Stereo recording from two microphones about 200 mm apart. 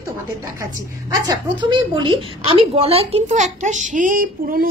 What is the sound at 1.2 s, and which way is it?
A woman's voice, 20° right (ahead or behind).